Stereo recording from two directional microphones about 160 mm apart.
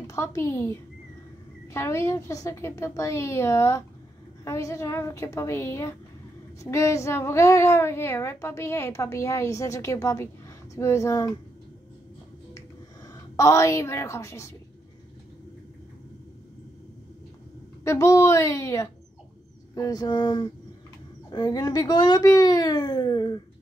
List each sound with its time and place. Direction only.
0.0 s a woman's voice: 20° left (ahead or behind)
13.1 s a woman's voice: 20° left (ahead or behind)
17.8 s a child's voice: 20° left (ahead or behind)